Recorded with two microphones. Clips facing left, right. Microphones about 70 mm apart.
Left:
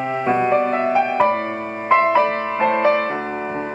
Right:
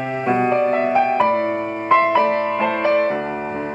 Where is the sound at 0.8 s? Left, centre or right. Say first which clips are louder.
Even; centre.